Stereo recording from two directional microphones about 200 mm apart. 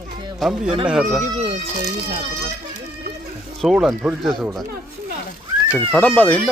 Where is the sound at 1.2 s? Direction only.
30° right (ahead or behind).